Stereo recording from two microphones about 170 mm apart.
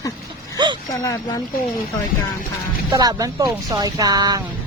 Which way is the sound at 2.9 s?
20° right (ahead or behind).